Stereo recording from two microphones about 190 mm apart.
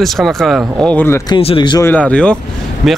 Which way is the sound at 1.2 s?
25° left (ahead or behind).